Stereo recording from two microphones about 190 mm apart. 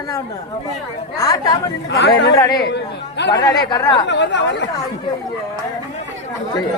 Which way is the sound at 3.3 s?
20° left (ahead or behind).